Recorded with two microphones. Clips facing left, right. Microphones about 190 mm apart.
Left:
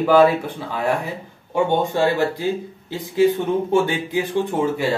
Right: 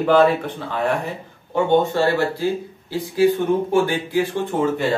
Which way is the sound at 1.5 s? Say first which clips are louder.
Right 2 dB; 15° left (ahead or behind).